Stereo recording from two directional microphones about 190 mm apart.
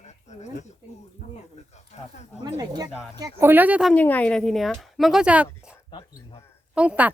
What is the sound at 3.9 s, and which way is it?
Speech, 10° left (ahead or behind).